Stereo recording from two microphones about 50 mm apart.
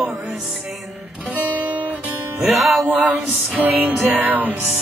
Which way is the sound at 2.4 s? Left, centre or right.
Centre.